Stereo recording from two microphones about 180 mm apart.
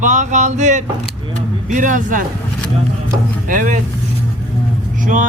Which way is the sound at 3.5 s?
45° right (ahead or behind).